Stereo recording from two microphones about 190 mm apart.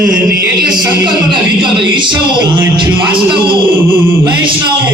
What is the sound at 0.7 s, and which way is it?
A man's voice, 25° right (ahead or behind).